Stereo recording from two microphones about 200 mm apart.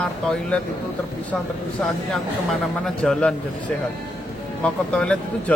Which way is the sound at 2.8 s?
5° left (ahead or behind).